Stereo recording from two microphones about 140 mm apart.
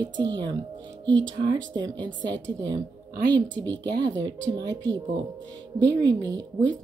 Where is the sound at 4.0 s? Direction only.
30° right (ahead or behind).